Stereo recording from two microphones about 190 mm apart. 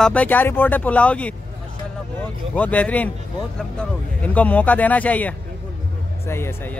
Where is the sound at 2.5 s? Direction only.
5° left (ahead or behind).